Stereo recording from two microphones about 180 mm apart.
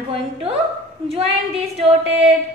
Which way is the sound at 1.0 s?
35° right (ahead or behind).